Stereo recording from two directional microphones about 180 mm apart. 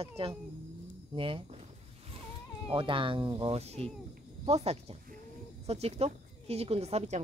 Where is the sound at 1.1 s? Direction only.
30° right (ahead or behind).